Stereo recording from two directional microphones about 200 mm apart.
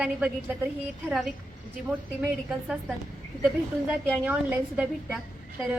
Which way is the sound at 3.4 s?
5° right (ahead or behind).